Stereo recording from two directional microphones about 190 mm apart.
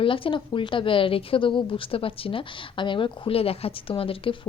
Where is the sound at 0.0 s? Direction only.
25° left (ahead or behind).